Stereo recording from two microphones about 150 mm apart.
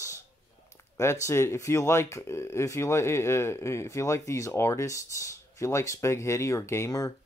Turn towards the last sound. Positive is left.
turn(degrees=20)  # may be behind; listen again after turning